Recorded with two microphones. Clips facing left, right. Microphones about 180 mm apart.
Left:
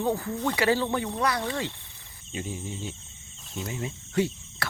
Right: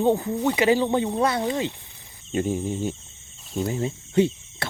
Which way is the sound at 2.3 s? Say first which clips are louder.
Right 10 dB; 50° right (ahead or behind).